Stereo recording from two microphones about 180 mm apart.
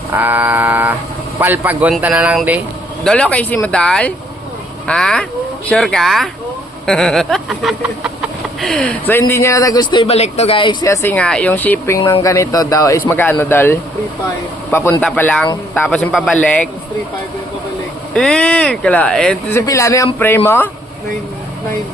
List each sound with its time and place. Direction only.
0.1 s speech: 10° right (ahead or behind)
3.0 s speech: 5° left (ahead or behind)
6.8 s chicken: centre (ahead or behind); by 9.8 s 20° left (ahead or behind)
9.9 s a man's voice: 30° left (ahead or behind); by 16.6 s 5° left (ahead or behind)
18.1 s speech: 5° left (ahead or behind)